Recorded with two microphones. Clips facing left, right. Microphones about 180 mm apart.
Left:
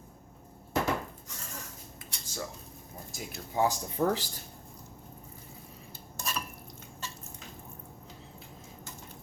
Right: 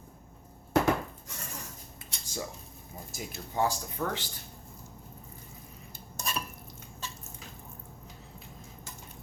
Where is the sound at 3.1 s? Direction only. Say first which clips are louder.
Right 1 dB; centre (ahead or behind).